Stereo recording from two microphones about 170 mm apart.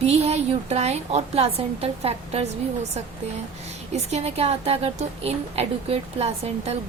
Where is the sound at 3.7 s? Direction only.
40° right (ahead or behind).